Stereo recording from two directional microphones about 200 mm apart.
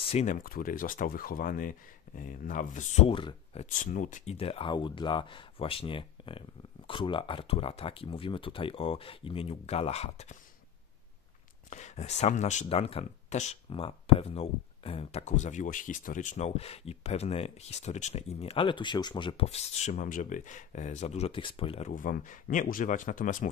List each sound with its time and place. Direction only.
0.0 s speech: 35° left (ahead or behind)
3.1 s speech: 25° left (ahead or behind)
3.7 s speech: 40° left (ahead or behind)
11.7 s speech: 35° left (ahead or behind)